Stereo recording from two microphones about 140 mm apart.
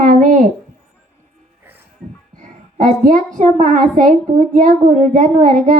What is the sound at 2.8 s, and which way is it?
Speech, 65° right (ahead or behind).